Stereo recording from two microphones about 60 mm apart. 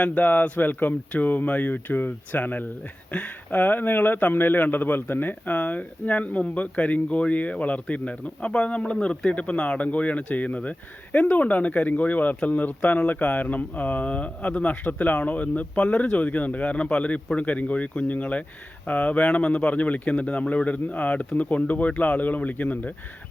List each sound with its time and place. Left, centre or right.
0.0 s a man's voice: left